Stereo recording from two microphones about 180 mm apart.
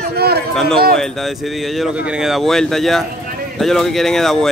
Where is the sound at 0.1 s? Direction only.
60° right (ahead or behind).